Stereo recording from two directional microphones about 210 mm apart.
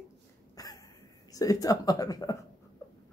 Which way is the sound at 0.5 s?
20° left (ahead or behind).